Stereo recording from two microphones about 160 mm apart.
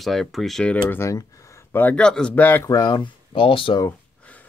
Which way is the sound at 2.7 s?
25° left (ahead or behind).